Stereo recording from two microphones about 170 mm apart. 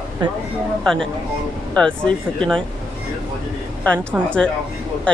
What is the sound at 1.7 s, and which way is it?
Speech, 5° left (ahead or behind).